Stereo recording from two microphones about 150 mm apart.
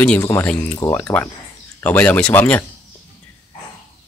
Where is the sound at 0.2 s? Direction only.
20° left (ahead or behind).